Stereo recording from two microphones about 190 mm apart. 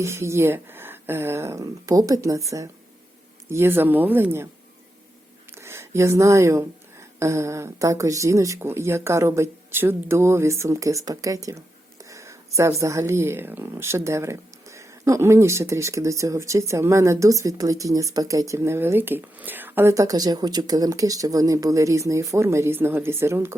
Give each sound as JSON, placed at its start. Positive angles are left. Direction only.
{"t": 0.0, "sound": "speech", "side_deg": -15}
{"t": 5.5, "sound": "speech", "side_deg": -15}